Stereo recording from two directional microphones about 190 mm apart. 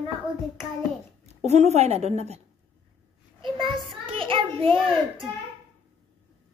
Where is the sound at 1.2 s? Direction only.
35° right (ahead or behind).